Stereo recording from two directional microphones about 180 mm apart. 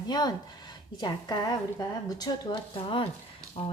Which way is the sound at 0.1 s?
20° left (ahead or behind).